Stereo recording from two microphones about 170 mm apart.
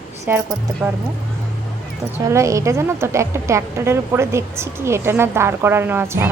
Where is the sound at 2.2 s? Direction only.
20° right (ahead or behind).